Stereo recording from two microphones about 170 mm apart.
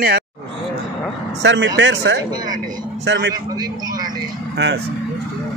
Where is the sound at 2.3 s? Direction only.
25° right (ahead or behind).